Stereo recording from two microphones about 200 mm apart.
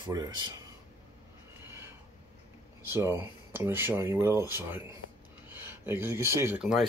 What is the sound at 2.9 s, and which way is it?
Speech, 10° right (ahead or behind).